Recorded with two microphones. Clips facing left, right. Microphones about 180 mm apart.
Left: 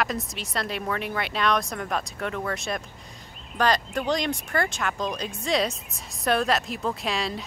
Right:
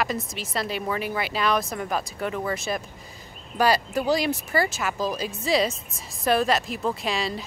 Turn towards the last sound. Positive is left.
turn(degrees=0)  # may be behind; listen again after turning